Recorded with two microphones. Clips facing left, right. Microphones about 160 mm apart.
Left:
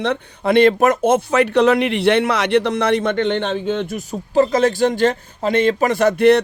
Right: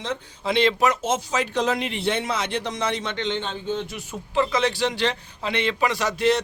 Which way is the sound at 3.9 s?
40° left (ahead or behind).